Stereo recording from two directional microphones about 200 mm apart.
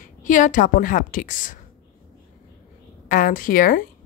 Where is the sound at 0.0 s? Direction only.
40° left (ahead or behind).